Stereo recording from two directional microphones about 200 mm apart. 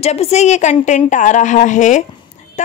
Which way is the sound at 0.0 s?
30° left (ahead or behind).